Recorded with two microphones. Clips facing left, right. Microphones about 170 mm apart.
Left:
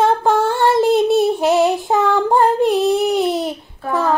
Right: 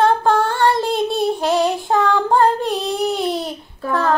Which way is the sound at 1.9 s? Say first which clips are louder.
Left 1 dB; 20° left (ahead or behind).